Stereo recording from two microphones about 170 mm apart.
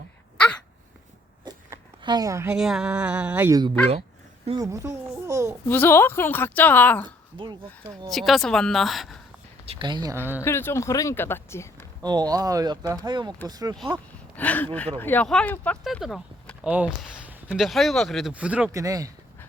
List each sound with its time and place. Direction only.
1.5 s a sound: 25° right (ahead or behind)
2.6 s speech: 5° right (ahead or behind)
5.6 s a woman's voice: 10° left (ahead or behind)
7.3 s speech: 30° right (ahead or behind)
8.1 s speech: centre (ahead or behind)
9.6 s speech: 25° right (ahead or behind)
10.4 s a woman's voice: 15° left (ahead or behind)
12.0 s speech: 25° right (ahead or behind)
14.3 s a woman's voice: 10° left (ahead or behind); by 18.7 s 5° right (ahead or behind)
18.7 s speech: 20° right (ahead or behind)